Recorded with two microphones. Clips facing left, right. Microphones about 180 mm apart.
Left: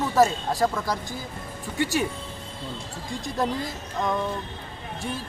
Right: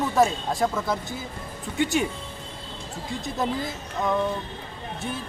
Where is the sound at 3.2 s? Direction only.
Centre (ahead or behind).